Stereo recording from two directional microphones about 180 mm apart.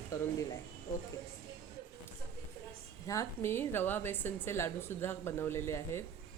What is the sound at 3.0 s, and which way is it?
A woman's voice, 15° left (ahead or behind).